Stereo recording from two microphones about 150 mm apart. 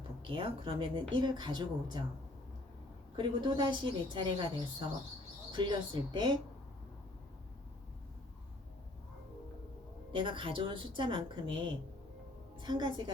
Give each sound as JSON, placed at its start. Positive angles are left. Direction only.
{"t": 0.3, "sound": "speech", "side_deg": -35}
{"t": 3.2, "sound": "speech", "side_deg": -30}
{"t": 5.5, "sound": "speech", "side_deg": -30}
{"t": 10.1, "sound": "speech", "side_deg": -35}
{"t": 12.5, "sound": "music", "side_deg": -30}